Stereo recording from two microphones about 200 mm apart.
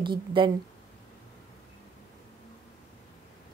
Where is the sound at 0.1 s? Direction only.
25° right (ahead or behind).